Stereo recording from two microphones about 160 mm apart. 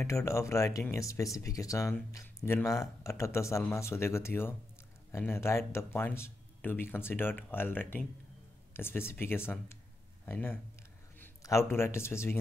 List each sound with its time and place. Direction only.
0.0 s speech: 20° left (ahead or behind)